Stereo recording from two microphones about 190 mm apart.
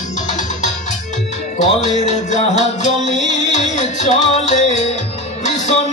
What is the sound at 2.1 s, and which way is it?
Music, 35° left (ahead or behind).